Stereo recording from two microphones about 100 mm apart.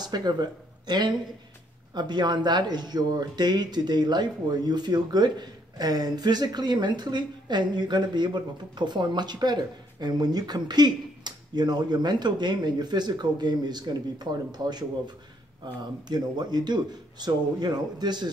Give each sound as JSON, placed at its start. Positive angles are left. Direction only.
{"t": 0.0, "sound": "speech", "side_deg": -45}